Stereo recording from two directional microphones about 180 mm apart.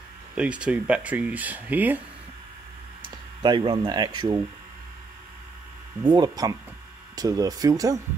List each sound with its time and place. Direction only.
0.4 s speech: 5° right (ahead or behind)
3.0 s speech: 25° right (ahead or behind)
6.0 s speech: 25° right (ahead or behind)